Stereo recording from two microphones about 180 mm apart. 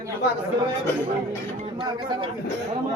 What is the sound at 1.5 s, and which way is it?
Speech, 30° right (ahead or behind).